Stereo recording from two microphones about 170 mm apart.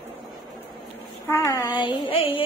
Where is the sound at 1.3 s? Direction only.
20° left (ahead or behind).